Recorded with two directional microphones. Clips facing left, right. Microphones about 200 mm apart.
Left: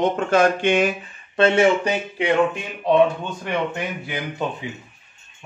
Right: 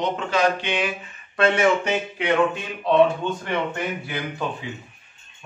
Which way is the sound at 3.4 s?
15° left (ahead or behind).